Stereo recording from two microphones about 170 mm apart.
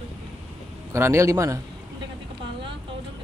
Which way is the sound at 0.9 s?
15° right (ahead or behind).